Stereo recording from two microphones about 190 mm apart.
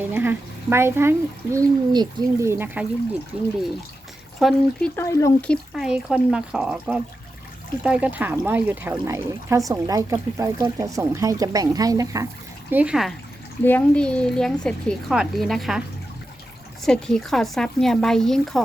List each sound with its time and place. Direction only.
0.1 s speech: 10° right (ahead or behind)
4.4 s a woman's voice: centre (ahead or behind)
4.9 s a woman's voice: 15° left (ahead or behind); by 12.3 s 15° right (ahead or behind)
12.7 s a woman's voice: 5° right (ahead or behind)
16.8 s a woman's voice: 5° left (ahead or behind)